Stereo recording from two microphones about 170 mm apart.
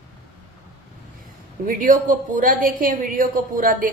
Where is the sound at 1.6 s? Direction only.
50° right (ahead or behind).